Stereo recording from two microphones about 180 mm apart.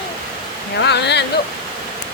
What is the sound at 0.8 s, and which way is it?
Speech, 70° left (ahead or behind).